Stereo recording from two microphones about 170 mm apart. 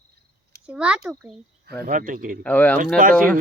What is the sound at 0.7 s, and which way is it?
Speech, 5° right (ahead or behind).